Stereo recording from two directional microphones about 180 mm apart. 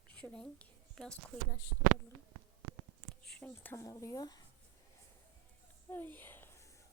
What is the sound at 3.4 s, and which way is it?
Speech, 10° left (ahead or behind).